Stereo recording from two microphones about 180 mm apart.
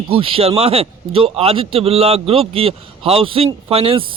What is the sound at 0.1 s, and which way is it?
Speech, 30° right (ahead or behind).